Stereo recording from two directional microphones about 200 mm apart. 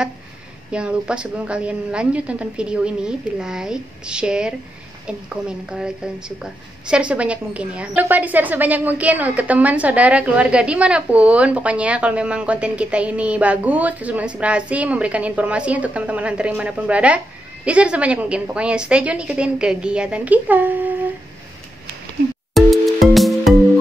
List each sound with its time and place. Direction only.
0.7 s a woman's voice: 5° right (ahead or behind)
22.5 s music: centre (ahead or behind)